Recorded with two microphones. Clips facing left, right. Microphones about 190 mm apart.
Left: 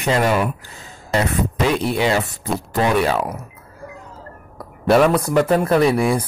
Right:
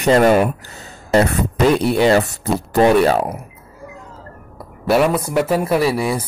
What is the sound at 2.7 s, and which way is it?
Speech, 40° right (ahead or behind).